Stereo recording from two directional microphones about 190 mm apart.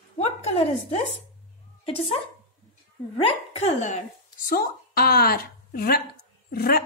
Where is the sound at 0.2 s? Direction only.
35° left (ahead or behind).